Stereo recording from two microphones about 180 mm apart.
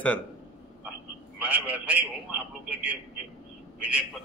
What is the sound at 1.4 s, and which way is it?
Speech, 10° right (ahead or behind).